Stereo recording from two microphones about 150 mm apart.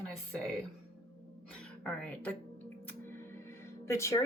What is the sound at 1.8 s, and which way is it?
Speech, 5° left (ahead or behind).